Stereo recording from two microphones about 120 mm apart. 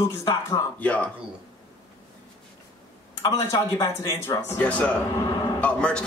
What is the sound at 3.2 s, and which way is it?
Speech, 30° left (ahead or behind).